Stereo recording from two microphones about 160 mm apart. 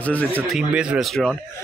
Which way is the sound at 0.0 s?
10° left (ahead or behind).